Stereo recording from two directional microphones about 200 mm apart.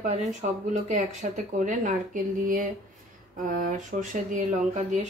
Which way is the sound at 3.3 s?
40° right (ahead or behind).